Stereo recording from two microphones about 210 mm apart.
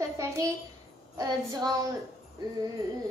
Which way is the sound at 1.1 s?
15° right (ahead or behind).